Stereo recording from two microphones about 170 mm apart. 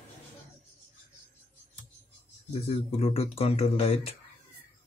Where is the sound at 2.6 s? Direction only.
35° left (ahead or behind).